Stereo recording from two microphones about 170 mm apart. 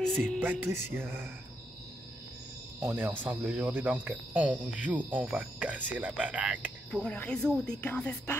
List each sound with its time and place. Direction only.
0.4 s speech: 10° right (ahead or behind)
2.8 s speech: 15° right (ahead or behind)
7.0 s music: 5° left (ahead or behind)